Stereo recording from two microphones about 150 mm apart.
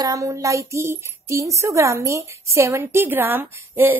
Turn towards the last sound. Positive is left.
turn(degrees=-15)  # may be behind; listen again after turning